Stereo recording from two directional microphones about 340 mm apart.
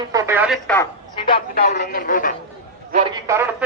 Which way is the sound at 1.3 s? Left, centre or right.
Left.